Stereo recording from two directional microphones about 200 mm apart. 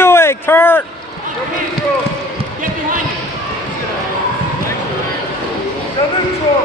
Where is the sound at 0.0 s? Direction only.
10° left (ahead or behind).